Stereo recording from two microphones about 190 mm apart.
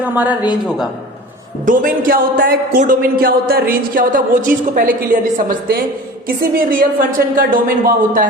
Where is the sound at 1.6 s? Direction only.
45° right (ahead or behind).